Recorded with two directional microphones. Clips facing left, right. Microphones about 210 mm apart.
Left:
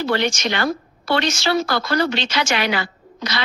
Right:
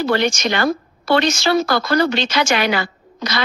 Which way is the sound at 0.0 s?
45° right (ahead or behind).